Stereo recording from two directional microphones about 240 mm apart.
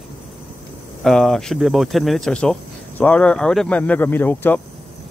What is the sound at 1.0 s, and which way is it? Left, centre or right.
Speech, centre.